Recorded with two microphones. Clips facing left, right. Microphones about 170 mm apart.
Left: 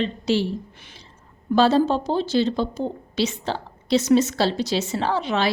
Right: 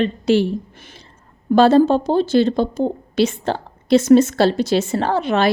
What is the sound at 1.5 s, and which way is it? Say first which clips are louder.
Speech: right 6 dB; 55° right (ahead or behind).